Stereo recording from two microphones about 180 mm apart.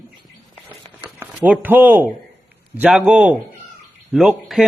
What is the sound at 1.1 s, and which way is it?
Speech, 5° right (ahead or behind).